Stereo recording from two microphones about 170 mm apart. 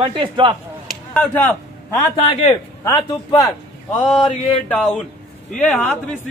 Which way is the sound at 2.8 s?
20° left (ahead or behind).